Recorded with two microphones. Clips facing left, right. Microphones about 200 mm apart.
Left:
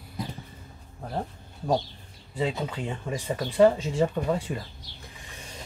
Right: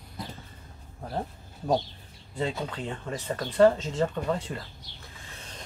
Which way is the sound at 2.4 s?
5° left (ahead or behind).